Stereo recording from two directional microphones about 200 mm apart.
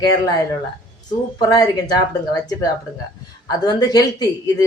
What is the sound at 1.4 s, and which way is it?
Speech, 20° left (ahead or behind).